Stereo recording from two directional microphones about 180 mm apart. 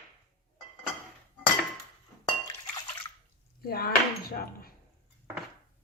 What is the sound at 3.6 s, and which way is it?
Speech, 55° left (ahead or behind).